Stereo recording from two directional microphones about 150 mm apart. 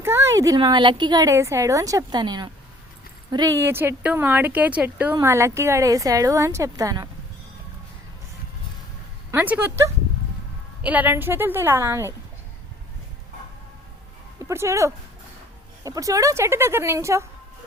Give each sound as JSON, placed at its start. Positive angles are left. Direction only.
{"t": 0.0, "sound": "a woman's voice", "side_deg": -15}
{"t": 9.3, "sound": "speech", "side_deg": -10}
{"t": 14.4, "sound": "a woman's voice", "side_deg": -20}